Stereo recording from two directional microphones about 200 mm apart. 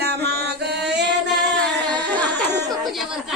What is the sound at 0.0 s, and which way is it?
Music, 55° right (ahead or behind).